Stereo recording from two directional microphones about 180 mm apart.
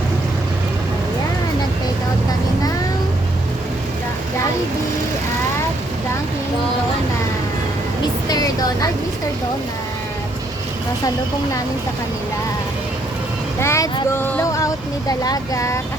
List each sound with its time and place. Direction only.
8.3 s vehicle: 20° left (ahead or behind)
13.6 s speech: 15° left (ahead or behind)